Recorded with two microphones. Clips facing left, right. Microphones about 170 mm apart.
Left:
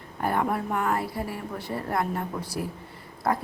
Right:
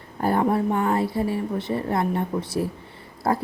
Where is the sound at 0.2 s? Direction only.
30° right (ahead or behind).